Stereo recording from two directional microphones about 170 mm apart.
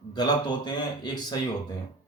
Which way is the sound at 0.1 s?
25° left (ahead or behind).